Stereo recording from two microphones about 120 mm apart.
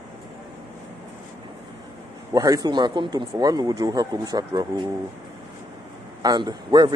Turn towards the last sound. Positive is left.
turn(degrees=-40)  # may be behind; listen again after turning